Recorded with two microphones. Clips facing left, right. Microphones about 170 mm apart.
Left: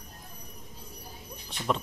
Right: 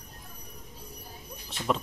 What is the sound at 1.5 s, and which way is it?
Speech, centre (ahead or behind).